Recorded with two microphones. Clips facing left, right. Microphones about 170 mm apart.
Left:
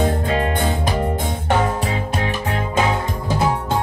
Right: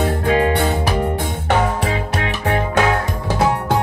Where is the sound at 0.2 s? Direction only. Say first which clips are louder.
Right 4 dB; 70° right (ahead or behind).